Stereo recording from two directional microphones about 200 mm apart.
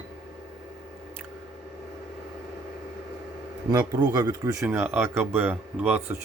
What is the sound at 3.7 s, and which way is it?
Speech, 20° right (ahead or behind).